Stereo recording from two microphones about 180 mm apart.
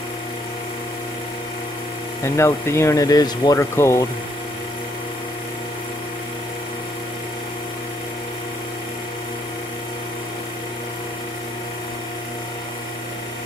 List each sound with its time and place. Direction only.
2.2 s speech: 15° left (ahead or behind)